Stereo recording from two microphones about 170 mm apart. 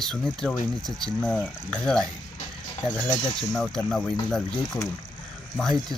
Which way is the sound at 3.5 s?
5° left (ahead or behind).